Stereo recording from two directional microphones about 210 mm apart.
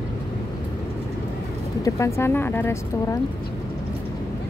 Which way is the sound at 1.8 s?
15° left (ahead or behind).